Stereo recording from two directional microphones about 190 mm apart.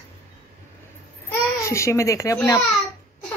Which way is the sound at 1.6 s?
15° left (ahead or behind).